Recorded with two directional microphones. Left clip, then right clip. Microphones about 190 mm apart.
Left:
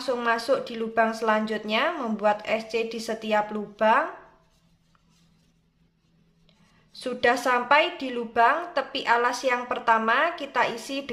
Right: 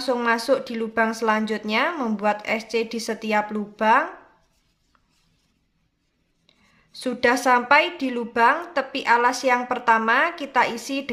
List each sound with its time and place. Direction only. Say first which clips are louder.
0.0 s a woman's voice: right 3 dB; 15° right (ahead or behind)
6.9 s a woman's voice: right 2 dB; 15° right (ahead or behind)